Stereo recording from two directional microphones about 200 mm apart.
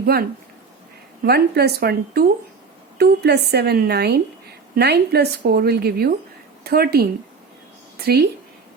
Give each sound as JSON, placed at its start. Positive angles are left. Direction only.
{"t": 0.0, "sound": "a woman's voice", "side_deg": -50}